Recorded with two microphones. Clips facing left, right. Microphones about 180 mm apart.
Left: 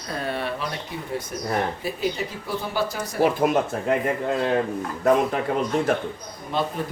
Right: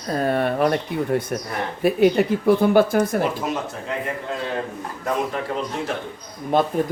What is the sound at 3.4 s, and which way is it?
Speech, 55° left (ahead or behind).